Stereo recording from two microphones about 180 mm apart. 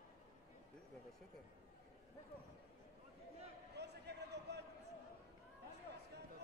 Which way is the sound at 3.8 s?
70° right (ahead or behind).